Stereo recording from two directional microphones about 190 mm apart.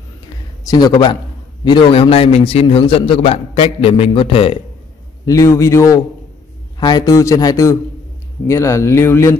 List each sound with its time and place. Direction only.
0.7 s a man's voice: 20° left (ahead or behind)
5.2 s speech: 15° left (ahead or behind)